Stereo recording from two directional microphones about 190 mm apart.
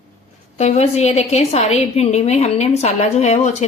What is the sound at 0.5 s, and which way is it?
A woman's voice, 35° left (ahead or behind).